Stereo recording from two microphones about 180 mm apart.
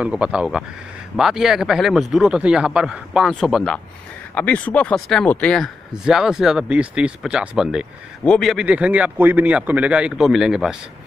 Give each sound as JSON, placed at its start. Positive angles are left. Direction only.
{"t": 0.0, "sound": "speech", "side_deg": -5}